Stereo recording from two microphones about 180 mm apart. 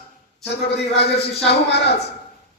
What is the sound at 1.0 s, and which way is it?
Speech, 65° left (ahead or behind).